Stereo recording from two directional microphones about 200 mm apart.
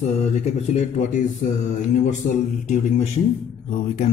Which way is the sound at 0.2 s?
35° left (ahead or behind).